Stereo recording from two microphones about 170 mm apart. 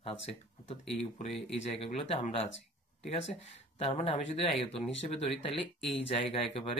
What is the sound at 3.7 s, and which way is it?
Speech, 40° left (ahead or behind).